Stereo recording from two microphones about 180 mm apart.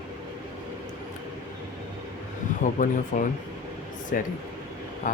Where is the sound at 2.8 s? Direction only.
45° left (ahead or behind).